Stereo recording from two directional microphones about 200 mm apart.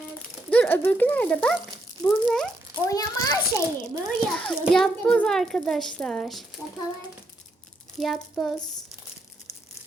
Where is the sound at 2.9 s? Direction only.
20° left (ahead or behind).